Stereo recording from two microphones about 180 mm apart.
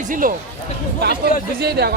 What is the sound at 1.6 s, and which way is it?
Speech, 65° right (ahead or behind).